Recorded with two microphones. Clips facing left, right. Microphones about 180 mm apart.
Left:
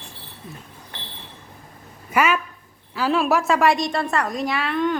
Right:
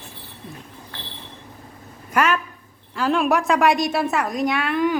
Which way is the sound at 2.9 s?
5° left (ahead or behind).